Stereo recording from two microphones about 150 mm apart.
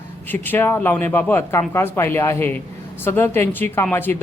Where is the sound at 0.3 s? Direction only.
15° left (ahead or behind).